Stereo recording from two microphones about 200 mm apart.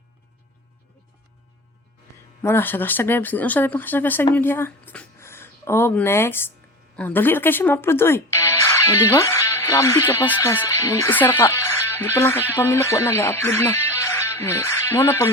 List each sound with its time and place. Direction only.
2.4 s speech: 10° left (ahead or behind)